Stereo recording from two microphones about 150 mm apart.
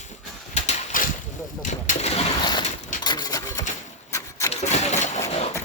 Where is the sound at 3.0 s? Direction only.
25° left (ahead or behind).